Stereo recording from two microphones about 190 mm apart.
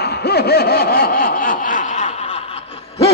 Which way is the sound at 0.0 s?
60° left (ahead or behind).